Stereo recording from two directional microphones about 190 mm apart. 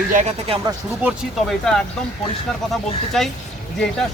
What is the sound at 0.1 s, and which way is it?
Speech, 40° right (ahead or behind).